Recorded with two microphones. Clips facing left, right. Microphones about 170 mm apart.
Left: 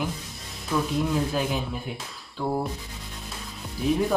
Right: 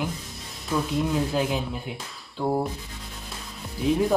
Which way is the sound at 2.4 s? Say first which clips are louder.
Right 2 dB; 15° right (ahead or behind).